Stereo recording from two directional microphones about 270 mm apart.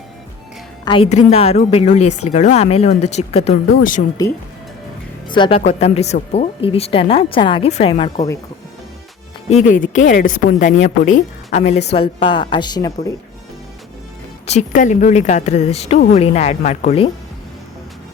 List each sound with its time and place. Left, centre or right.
0.9 s speech: left
4.2 s a woman's voice: centre
9.7 s a woman's voice: left; by 13.1 s centre
14.4 s speech: left